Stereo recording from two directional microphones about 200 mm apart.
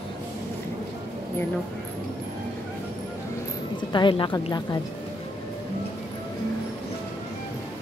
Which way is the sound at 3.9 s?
25° left (ahead or behind).